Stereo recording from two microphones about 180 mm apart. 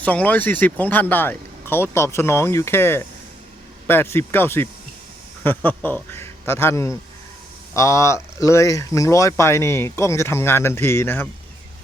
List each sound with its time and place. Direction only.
0.0 s a man's voice: 10° left (ahead or behind)